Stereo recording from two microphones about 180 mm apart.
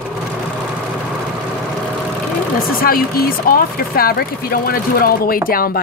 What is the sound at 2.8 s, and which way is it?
Speech, 55° left (ahead or behind).